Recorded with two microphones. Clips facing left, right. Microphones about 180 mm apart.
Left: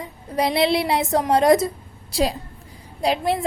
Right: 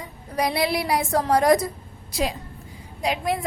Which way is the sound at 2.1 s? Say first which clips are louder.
Left 4 dB; 35° left (ahead or behind).